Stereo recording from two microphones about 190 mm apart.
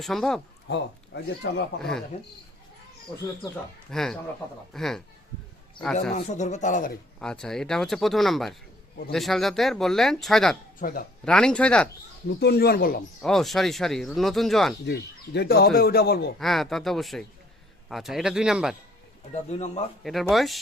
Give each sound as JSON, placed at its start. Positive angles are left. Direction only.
{"t": 0.0, "sound": "speech", "side_deg": 0}
{"t": 0.7, "sound": "speech", "side_deg": 65}
{"t": 1.8, "sound": "speech", "side_deg": 5}
{"t": 3.9, "sound": "speech", "side_deg": 0}
{"t": 6.1, "sound": "speech", "side_deg": 40}
{"t": 7.2, "sound": "speech", "side_deg": 5}
{"t": 10.8, "sound": "speech", "side_deg": 50}
{"t": 11.3, "sound": "speech", "side_deg": 5}
{"t": 12.4, "sound": "speech", "side_deg": 55}
{"t": 13.2, "sound": "speech", "side_deg": 0}
{"t": 14.8, "sound": "speech", "side_deg": 65}
{"t": 16.4, "sound": "speech", "side_deg": 0}
{"t": 19.3, "sound": "speech", "side_deg": 35}
{"t": 20.3, "sound": "speech", "side_deg": 0}